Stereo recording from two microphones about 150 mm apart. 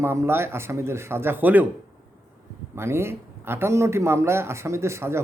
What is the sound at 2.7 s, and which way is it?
A man's voice, 15° right (ahead or behind).